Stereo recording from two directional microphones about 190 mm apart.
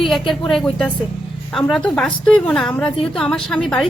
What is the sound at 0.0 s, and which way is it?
A woman's voice, centre (ahead or behind).